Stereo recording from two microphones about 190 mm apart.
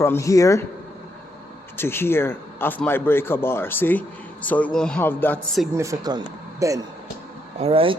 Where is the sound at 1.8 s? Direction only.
10° left (ahead or behind).